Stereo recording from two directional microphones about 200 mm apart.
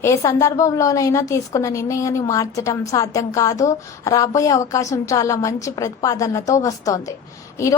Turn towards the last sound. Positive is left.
turn(degrees=15)  # may be behind; listen again after turning